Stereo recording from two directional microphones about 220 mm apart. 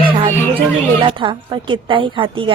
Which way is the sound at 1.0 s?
20° right (ahead or behind).